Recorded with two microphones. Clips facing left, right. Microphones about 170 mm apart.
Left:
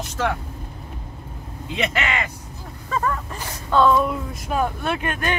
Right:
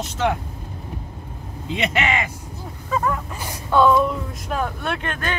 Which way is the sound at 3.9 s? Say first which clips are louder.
Right 1 dB; 5° left (ahead or behind).